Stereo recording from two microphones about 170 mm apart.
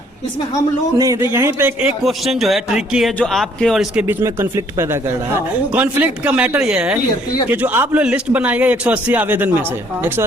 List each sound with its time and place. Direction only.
0.9 s a man's voice: 20° right (ahead or behind)
2.0 s speech: centre (ahead or behind)
4.0 s a man's voice: 15° right (ahead or behind)